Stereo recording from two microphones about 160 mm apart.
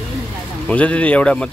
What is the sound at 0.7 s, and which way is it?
Speech, 10° left (ahead or behind).